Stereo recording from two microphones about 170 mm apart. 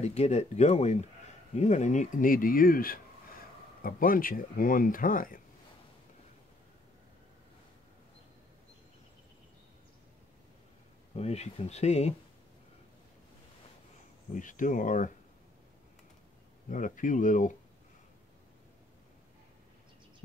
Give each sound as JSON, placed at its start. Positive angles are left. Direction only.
{"t": 0.0, "sound": "speech", "side_deg": 40}
{"t": 11.1, "sound": "speech", "side_deg": 40}
{"t": 14.3, "sound": "speech", "side_deg": 50}
{"t": 16.6, "sound": "speech", "side_deg": 50}